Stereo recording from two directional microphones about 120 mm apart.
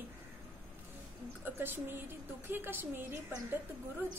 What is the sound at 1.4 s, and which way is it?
A woman's voice, 15° right (ahead or behind).